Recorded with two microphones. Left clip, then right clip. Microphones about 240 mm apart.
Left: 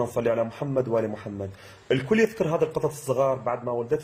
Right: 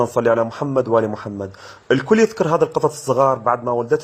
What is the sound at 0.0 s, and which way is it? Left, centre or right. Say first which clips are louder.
A man's voice: right 8 dB; centre.